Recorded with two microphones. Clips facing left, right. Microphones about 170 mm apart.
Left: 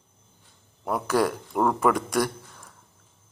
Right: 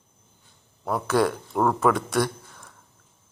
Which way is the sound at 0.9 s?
10° left (ahead or behind).